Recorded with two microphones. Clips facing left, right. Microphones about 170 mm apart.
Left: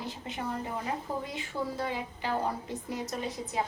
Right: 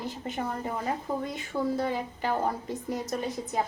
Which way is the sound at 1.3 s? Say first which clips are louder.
Right 5 dB; 45° right (ahead or behind).